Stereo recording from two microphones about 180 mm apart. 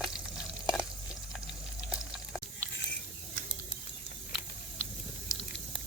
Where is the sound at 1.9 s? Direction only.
5° right (ahead or behind).